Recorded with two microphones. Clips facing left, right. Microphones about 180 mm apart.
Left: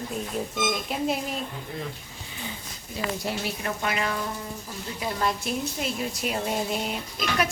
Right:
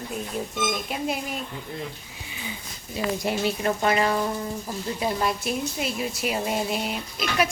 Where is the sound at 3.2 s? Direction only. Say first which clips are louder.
Right 5 dB; 15° right (ahead or behind).